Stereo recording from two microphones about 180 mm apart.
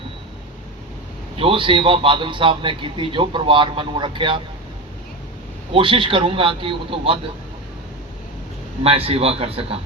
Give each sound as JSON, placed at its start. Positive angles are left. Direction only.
{"t": 1.4, "sound": "a man's voice", "side_deg": -30}
{"t": 5.7, "sound": "a man's voice", "side_deg": -30}
{"t": 8.8, "sound": "speech", "side_deg": -30}